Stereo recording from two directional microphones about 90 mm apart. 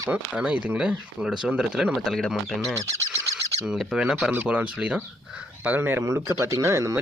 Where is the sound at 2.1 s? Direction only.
5° left (ahead or behind).